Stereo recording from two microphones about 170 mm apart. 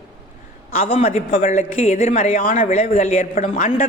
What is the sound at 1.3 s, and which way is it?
Speech, 50° left (ahead or behind).